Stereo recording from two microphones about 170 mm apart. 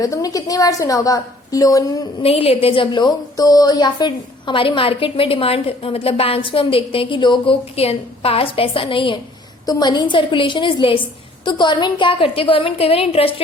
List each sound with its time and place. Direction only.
0.0 s a woman's voice: 20° left (ahead or behind)
2.2 s a woman's voice: 35° left (ahead or behind)